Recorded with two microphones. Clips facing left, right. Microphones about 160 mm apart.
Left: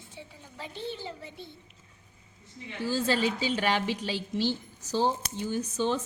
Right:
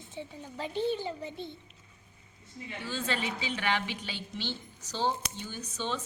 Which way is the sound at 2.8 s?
35° left (ahead or behind).